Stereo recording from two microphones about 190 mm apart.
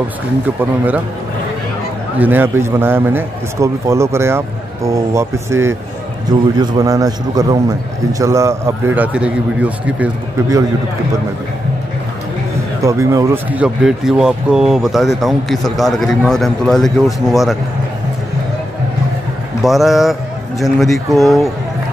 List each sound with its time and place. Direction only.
0.6 s a man's voice: 10° right (ahead or behind)
2.1 s a man's voice: 10° right (ahead or behind)
12.8 s speech: 15° right (ahead or behind); by 17.6 s centre (ahead or behind)
19.6 s speech: centre (ahead or behind)